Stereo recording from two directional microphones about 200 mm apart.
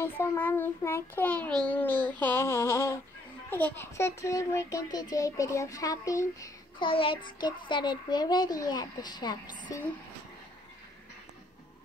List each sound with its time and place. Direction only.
0.0 s child singing: 10° left (ahead or behind)
3.4 s speech: 10° left (ahead or behind)
9.7 s child singing: 15° left (ahead or behind)